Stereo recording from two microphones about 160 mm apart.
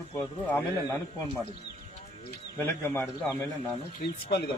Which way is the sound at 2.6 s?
15° left (ahead or behind).